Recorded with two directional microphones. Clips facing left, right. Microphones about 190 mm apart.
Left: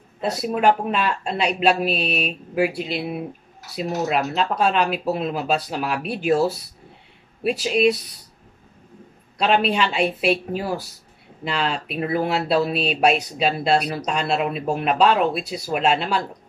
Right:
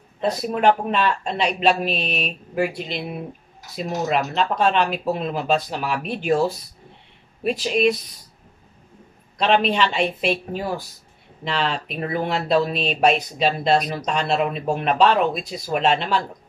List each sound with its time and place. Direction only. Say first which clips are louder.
0.2 s speech: even; 5° left (ahead or behind)
9.4 s speech: right 1 dB; 5° left (ahead or behind)